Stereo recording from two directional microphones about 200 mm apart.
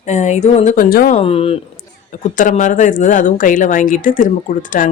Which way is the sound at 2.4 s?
40° left (ahead or behind).